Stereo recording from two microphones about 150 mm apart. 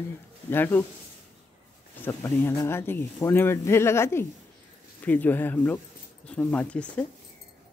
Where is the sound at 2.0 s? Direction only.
15° left (ahead or behind).